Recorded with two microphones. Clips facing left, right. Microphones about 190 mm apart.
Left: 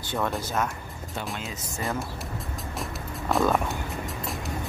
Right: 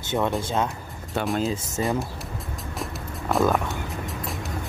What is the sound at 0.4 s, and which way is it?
Speech, 25° right (ahead or behind).